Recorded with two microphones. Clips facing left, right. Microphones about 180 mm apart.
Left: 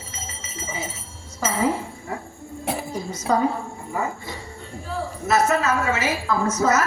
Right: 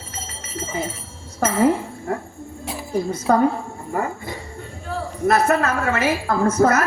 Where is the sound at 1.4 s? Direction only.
55° right (ahead or behind).